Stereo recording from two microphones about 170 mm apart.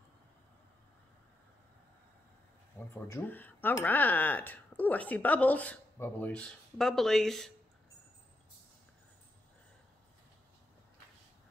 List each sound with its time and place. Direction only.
2.9 s speech: 10° left (ahead or behind)